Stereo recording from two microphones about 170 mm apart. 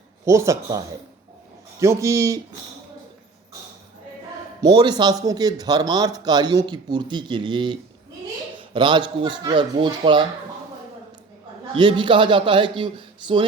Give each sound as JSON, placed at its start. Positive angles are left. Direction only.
{"t": 0.3, "sound": "a man's voice", "side_deg": -15}
{"t": 1.8, "sound": "a man's voice", "side_deg": -15}
{"t": 4.6, "sound": "speech", "side_deg": -25}
{"t": 11.7, "sound": "speech", "side_deg": -30}